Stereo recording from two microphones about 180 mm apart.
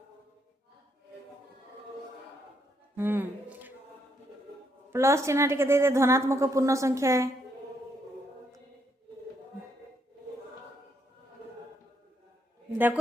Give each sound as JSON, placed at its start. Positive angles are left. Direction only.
{"t": 2.9, "sound": "a sound", "side_deg": -10}
{"t": 4.9, "sound": "a woman's voice", "side_deg": -15}
{"t": 12.7, "sound": "a man's voice", "side_deg": -10}